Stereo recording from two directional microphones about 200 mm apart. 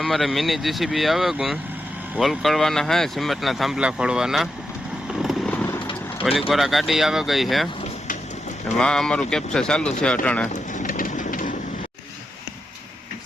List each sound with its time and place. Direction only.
0.0 s speech: centre (ahead or behind)
5.2 s vehicle: 5° left (ahead or behind)
6.5 s speech: centre (ahead or behind)
8.8 s speech: 5° left (ahead or behind)
10.5 s vehicle: 40° left (ahead or behind)